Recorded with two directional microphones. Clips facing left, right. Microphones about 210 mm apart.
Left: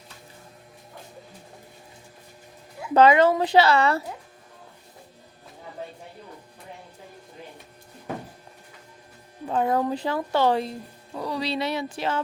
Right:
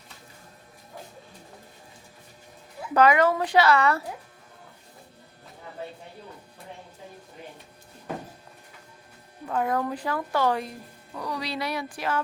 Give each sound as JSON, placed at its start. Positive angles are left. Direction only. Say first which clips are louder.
{"t": 2.9, "sound": "speech", "louder": "left 3 dB", "side_deg": 25}
{"t": 9.5, "sound": "speech", "louder": "left 3 dB", "side_deg": 25}